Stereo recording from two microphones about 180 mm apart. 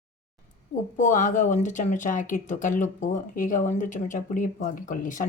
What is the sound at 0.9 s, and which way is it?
Speech, 45° left (ahead or behind).